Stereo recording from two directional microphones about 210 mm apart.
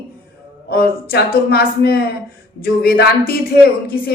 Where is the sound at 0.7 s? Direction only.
45° left (ahead or behind).